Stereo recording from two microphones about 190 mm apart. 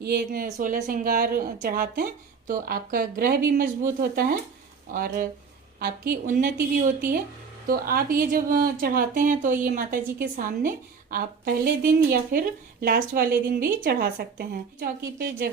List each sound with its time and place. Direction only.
0.0 s speech: 50° right (ahead or behind)